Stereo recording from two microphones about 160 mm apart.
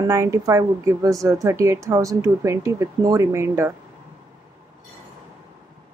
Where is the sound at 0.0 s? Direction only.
20° right (ahead or behind).